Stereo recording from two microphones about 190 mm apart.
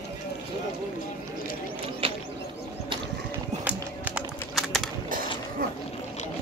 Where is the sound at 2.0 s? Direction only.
30° right (ahead or behind).